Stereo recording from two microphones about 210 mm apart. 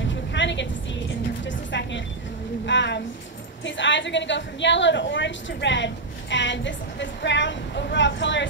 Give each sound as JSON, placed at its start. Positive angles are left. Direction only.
{"t": 0.1, "sound": "music", "side_deg": 60}
{"t": 2.6, "sound": "a sound", "side_deg": 55}
{"t": 3.6, "sound": "a woman's voice", "side_deg": 60}